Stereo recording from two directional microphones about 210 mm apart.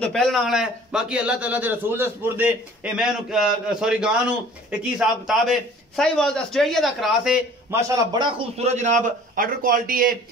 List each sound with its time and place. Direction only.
0.0 s a man's voice: centre (ahead or behind)
7.9 s a man's voice: 20° right (ahead or behind); by 10.1 s 40° right (ahead or behind)